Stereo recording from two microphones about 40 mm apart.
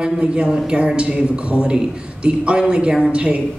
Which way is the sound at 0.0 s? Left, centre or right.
Right.